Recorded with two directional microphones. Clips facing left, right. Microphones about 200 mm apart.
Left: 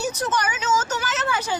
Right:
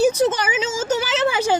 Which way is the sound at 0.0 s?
90° right.